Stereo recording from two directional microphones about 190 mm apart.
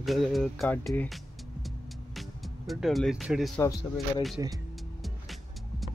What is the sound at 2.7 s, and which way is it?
Speech, centre (ahead or behind).